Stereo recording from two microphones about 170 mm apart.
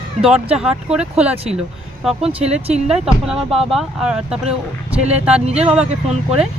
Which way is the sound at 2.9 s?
5° right (ahead or behind).